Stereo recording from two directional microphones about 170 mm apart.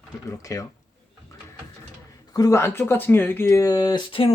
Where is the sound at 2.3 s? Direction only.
20° left (ahead or behind).